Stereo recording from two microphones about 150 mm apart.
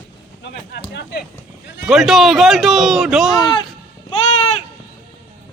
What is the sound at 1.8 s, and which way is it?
A man's voice, centre (ahead or behind).